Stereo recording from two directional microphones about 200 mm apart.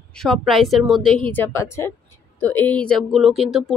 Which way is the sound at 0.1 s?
Centre (ahead or behind).